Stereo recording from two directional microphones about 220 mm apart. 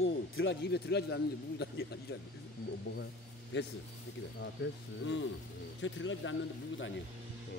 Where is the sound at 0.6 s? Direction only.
45° left (ahead or behind).